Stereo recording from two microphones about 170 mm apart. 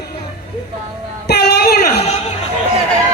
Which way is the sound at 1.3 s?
80° left.